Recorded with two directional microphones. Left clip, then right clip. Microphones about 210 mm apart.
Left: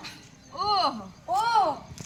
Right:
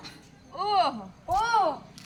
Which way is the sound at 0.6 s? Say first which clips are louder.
Even; 15° right (ahead or behind).